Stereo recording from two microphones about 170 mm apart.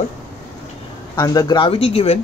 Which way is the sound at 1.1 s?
20° left (ahead or behind).